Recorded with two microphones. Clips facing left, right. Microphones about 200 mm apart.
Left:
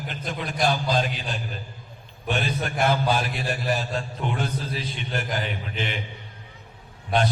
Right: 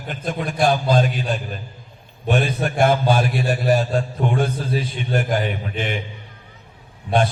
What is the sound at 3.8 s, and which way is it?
A man's voice, 50° right (ahead or behind).